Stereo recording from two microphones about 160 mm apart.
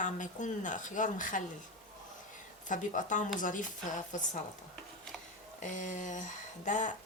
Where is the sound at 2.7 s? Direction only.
50° left (ahead or behind).